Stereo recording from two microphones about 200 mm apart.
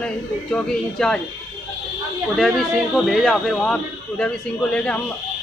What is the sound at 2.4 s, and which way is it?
A man's voice, centre (ahead or behind).